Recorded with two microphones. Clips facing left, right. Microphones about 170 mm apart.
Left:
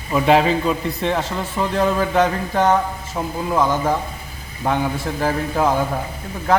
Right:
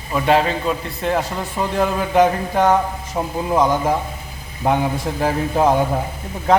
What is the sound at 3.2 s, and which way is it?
Speech, 20° right (ahead or behind).